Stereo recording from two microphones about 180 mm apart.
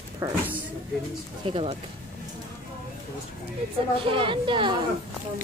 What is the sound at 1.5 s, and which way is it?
Speech, 35° right (ahead or behind).